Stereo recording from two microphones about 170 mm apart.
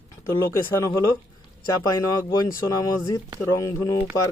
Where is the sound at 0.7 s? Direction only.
15° left (ahead or behind).